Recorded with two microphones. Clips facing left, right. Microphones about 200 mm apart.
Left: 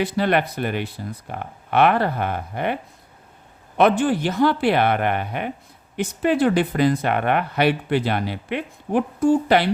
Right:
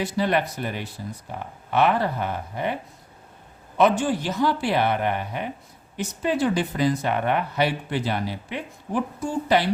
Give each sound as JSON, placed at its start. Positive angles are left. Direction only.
{"t": 0.0, "sound": "speech", "side_deg": 60}
{"t": 3.8, "sound": "speech", "side_deg": 60}